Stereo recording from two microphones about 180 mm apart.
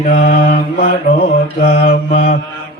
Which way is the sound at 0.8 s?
35° left (ahead or behind).